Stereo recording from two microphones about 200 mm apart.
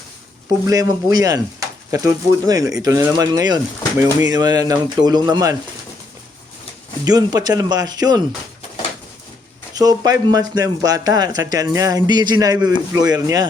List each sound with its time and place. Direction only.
0.7 s speech: 15° right (ahead or behind)
7.0 s speech: 20° right (ahead or behind)
9.7 s speech: 20° right (ahead or behind)